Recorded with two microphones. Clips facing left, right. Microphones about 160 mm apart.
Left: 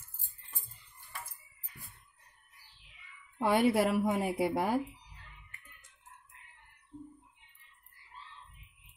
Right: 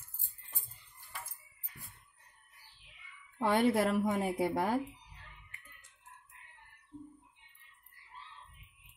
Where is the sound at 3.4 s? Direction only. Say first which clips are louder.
Left 2 dB; 10° left (ahead or behind).